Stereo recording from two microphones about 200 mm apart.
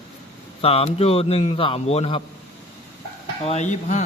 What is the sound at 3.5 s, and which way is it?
Speech, 35° left (ahead or behind).